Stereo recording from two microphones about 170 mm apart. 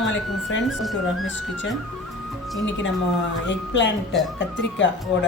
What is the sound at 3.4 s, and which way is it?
Speech, 90° left.